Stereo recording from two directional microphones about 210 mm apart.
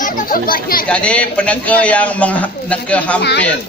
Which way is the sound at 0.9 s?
5° left (ahead or behind).